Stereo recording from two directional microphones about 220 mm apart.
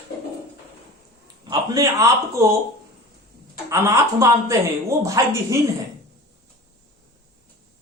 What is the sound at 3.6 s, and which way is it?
A man's voice, 15° right (ahead or behind).